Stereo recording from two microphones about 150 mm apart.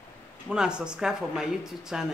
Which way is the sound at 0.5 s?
5° right (ahead or behind).